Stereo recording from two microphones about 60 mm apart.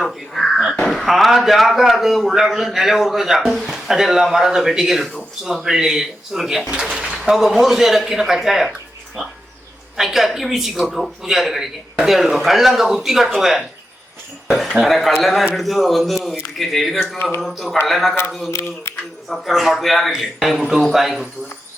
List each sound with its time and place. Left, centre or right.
0.0 s a sound: centre
0.9 s speech: centre
3.8 s speech: centre
10.0 s speech: centre
18.5 s speech: left
19.3 s speech: centre